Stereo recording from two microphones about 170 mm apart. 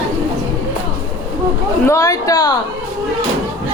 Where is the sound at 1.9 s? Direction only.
20° left (ahead or behind).